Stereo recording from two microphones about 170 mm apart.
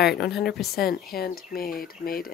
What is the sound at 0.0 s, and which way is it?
Speech, 70° left (ahead or behind).